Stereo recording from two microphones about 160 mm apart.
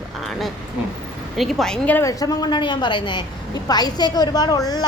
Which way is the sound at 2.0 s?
20° left (ahead or behind).